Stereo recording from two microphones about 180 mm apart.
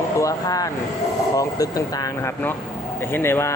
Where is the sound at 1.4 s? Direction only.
20° left (ahead or behind).